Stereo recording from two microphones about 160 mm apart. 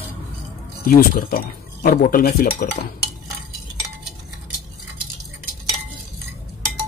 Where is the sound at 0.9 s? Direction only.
65° left (ahead or behind).